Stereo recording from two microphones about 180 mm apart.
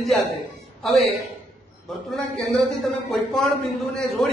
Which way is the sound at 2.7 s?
Centre (ahead or behind).